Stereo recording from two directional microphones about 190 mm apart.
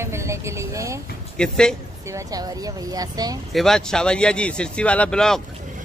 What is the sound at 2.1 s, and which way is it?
Speech, 15° right (ahead or behind).